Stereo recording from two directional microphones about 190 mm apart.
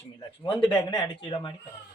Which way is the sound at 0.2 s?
25° left (ahead or behind).